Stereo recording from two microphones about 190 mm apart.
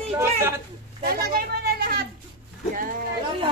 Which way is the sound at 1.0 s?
55° right (ahead or behind).